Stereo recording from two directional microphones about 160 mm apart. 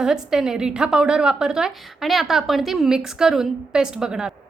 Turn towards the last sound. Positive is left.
turn(degrees=-5)  # may be behind; listen again after turning